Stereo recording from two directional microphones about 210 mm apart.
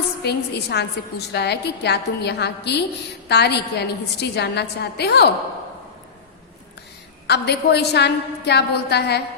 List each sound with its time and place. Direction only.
0.2 s a woman's voice: 50° left (ahead or behind)
7.3 s a woman's voice: 50° left (ahead or behind)